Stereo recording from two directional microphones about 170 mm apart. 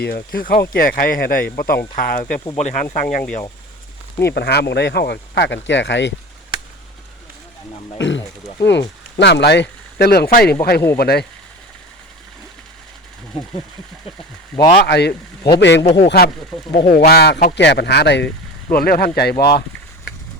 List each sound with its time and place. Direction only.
0.0 s speech: 60° left (ahead or behind)
2.6 s speech: 45° left (ahead or behind)
4.3 s speech: 70° left (ahead or behind); by 6.1 s 90° left
7.9 s speech: 90° left; by 11.3 s 70° left (ahead or behind)
14.5 s speech: 5° left (ahead or behind)
14.8 s speech: 75° left (ahead or behind)
15.5 s speech: 90° left
15.8 s speech: 40° left (ahead or behind)
16.0 s speech: 65° left (ahead or behind); by 18.3 s 85° left
18.7 s speech: 65° left (ahead or behind)